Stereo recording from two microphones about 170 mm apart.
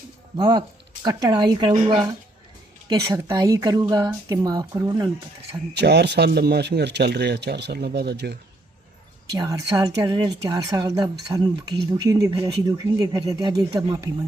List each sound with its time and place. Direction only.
0.3 s a woman's voice: 25° right (ahead or behind)
5.7 s a man's voice: 80° right
9.3 s a woman's voice: 20° right (ahead or behind)